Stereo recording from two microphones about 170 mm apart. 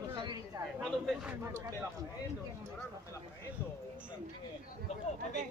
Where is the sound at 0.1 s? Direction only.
25° right (ahead or behind).